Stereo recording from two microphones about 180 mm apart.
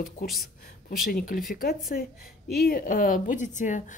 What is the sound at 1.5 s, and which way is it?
Speech, 50° left (ahead or behind).